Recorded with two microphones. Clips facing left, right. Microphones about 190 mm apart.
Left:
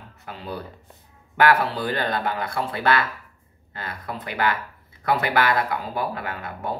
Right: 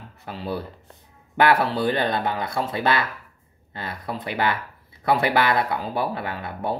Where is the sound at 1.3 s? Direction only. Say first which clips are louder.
Even; 25° right (ahead or behind).